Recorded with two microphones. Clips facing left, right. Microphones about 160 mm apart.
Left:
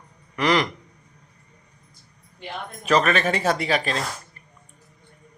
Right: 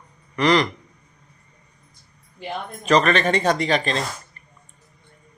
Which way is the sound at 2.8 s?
5° left (ahead or behind).